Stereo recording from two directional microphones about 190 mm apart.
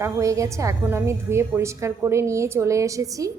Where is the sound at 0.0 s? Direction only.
15° right (ahead or behind).